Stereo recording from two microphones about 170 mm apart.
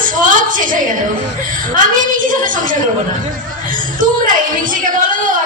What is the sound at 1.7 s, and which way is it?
A woman's voice, 50° right (ahead or behind).